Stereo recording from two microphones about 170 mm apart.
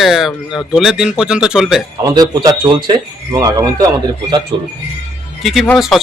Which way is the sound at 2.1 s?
25° right (ahead or behind).